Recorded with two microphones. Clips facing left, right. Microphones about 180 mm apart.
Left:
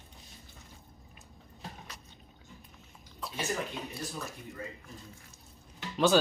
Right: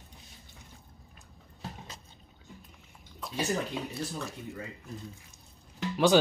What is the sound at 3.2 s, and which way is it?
Bathtub, centre (ahead or behind).